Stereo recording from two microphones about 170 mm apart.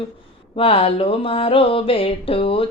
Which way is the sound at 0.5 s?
35° left (ahead or behind).